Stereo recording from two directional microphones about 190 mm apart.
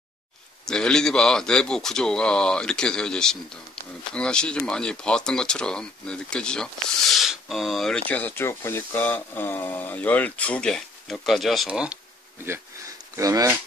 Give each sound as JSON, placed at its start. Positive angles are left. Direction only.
{"t": 0.7, "sound": "speech", "side_deg": 5}
{"t": 13.1, "sound": "speech", "side_deg": -15}